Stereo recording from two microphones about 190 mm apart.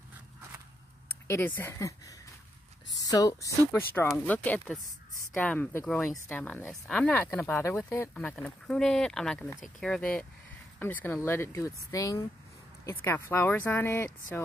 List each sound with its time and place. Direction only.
1.2 s speech: 10° left (ahead or behind)
4.5 s speech: centre (ahead or behind)